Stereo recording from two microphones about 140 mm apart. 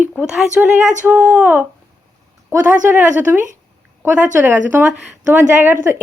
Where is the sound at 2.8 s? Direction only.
15° right (ahead or behind).